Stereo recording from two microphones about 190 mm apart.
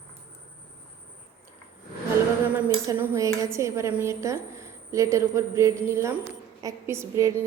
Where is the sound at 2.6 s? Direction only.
15° right (ahead or behind).